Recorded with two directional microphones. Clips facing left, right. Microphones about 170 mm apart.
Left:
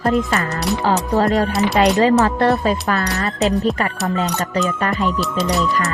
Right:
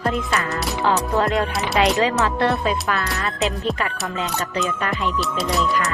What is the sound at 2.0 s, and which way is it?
Speech, 45° left (ahead or behind).